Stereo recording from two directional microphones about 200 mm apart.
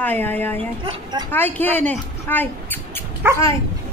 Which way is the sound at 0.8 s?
20° right (ahead or behind).